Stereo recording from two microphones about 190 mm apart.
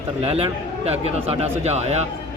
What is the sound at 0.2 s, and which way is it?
A man's voice, 30° right (ahead or behind).